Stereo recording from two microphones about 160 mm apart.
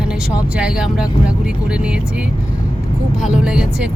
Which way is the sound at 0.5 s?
5° right (ahead or behind).